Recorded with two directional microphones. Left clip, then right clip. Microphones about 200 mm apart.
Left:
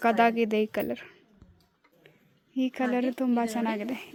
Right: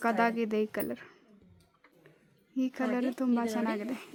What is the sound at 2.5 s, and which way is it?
A woman's voice, 10° left (ahead or behind).